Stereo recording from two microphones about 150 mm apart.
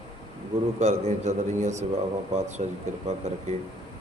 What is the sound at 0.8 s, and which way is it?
A man's voice, 50° right (ahead or behind).